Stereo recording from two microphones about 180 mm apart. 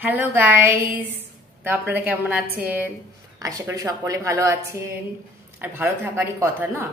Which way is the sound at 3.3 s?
20° right (ahead or behind).